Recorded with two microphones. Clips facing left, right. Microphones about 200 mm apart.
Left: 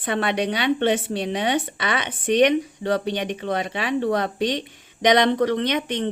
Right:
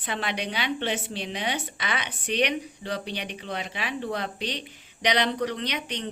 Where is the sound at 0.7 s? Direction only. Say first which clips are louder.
Left 11 dB; 55° left (ahead or behind).